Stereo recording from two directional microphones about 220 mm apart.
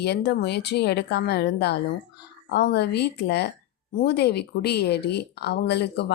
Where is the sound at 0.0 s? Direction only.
50° left (ahead or behind).